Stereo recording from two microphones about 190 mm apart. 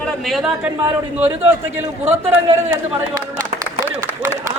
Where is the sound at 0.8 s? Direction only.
15° right (ahead or behind).